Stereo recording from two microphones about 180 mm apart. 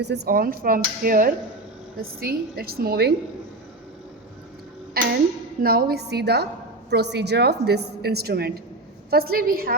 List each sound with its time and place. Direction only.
0.0 s a woman's voice: 70° right (ahead or behind)
5.0 s music: 60° right (ahead or behind)
5.6 s a woman's voice: 60° right (ahead or behind)